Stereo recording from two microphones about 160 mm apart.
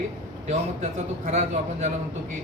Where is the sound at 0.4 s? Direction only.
50° right (ahead or behind).